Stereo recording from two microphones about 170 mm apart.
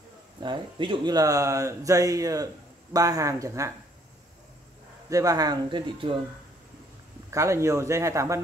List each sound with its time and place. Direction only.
0.4 s speech: 30° right (ahead or behind)
5.1 s speech: 20° right (ahead or behind)
7.2 s a man's voice: 15° right (ahead or behind)